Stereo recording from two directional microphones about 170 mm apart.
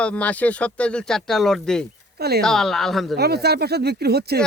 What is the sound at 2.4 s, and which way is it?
Speech, 5° left (ahead or behind).